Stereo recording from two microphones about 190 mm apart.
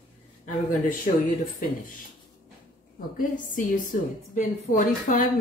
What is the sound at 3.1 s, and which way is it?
Speech, 45° left (ahead or behind).